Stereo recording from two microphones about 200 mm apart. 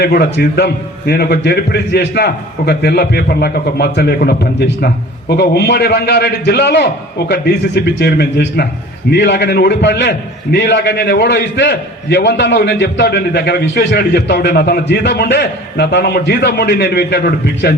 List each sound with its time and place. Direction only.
0.0 s a man's voice: 55° left (ahead or behind)